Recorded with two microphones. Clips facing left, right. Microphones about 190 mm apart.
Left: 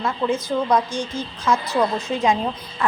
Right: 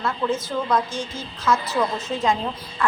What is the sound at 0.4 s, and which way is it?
A woman's voice, 15° left (ahead or behind).